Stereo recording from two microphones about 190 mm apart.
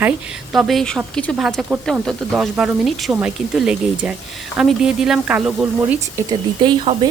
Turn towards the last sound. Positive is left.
turn(degrees=-25)  # may be behind; listen again after turning